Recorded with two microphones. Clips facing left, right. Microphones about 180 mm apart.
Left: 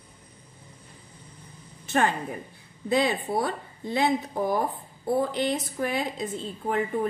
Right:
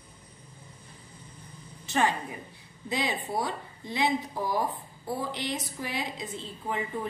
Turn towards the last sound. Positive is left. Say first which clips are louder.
# left 6 dB
turn(degrees=50)  # may be behind; listen again after turning